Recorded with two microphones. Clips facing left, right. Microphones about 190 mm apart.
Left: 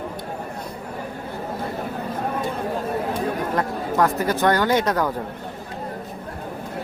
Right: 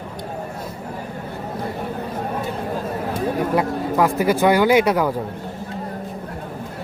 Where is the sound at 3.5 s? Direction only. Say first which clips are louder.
Right 3 dB; 10° right (ahead or behind).